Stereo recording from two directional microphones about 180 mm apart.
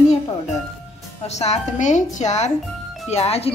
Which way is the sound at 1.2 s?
40° left (ahead or behind).